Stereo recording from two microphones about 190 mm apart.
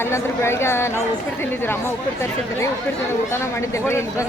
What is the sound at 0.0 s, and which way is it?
Speech, 15° left (ahead or behind).